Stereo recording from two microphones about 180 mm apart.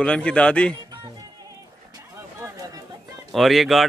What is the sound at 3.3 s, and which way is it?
Speech, centre (ahead or behind).